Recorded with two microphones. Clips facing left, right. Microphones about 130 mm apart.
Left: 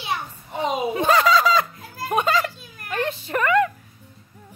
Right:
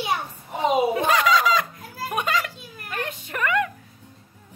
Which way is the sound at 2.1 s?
30° left (ahead or behind).